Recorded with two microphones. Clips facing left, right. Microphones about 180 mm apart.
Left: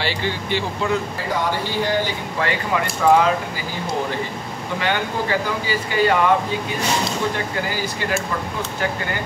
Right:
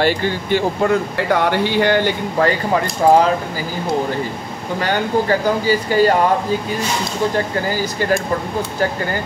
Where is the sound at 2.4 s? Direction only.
40° right (ahead or behind).